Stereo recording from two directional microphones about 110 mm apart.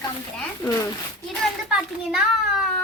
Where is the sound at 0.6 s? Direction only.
35° left (ahead or behind).